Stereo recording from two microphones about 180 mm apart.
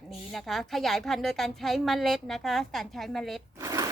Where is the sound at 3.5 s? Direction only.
15° right (ahead or behind).